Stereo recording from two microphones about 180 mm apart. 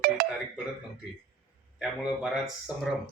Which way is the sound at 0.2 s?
55° right (ahead or behind).